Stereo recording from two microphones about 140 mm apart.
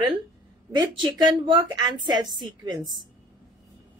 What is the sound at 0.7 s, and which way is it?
Speech, 30° right (ahead or behind).